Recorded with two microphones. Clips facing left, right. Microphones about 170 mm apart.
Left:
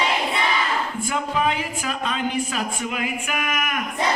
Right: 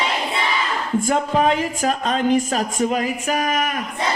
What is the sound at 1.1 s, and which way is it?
Speech, 40° right (ahead or behind).